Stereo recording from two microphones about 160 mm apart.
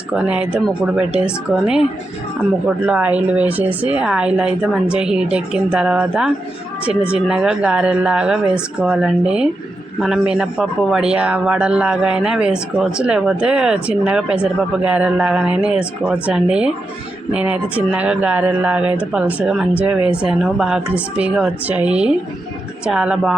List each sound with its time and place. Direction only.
0.1 s a man's voice: 5° right (ahead or behind)